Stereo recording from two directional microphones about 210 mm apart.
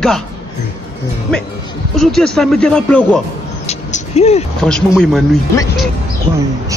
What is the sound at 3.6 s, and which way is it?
Vehicle, 30° left (ahead or behind).